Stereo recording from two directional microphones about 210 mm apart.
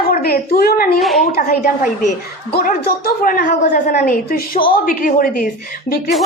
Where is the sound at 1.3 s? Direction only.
40° left (ahead or behind).